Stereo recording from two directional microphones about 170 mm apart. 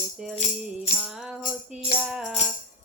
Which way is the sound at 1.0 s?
5° right (ahead or behind).